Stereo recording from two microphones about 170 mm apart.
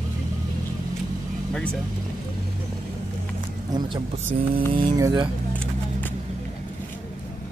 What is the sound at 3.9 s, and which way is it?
Speech, 30° right (ahead or behind).